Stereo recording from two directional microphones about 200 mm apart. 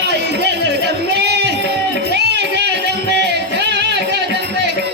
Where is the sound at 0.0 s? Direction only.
55° right (ahead or behind).